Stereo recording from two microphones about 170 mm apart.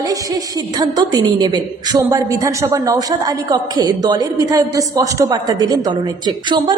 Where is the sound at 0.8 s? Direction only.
25° right (ahead or behind).